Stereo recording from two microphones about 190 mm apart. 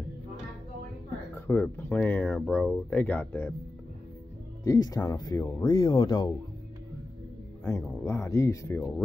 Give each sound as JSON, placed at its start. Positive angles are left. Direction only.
{"t": 1.5, "sound": "speech", "side_deg": 10}
{"t": 4.6, "sound": "speech", "side_deg": 20}
{"t": 7.6, "sound": "speech", "side_deg": 15}